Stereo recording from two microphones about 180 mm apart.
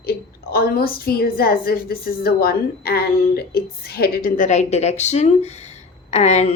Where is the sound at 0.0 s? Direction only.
60° left (ahead or behind).